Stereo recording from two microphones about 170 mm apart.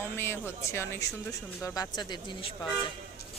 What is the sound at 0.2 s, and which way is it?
Speech, 15° left (ahead or behind).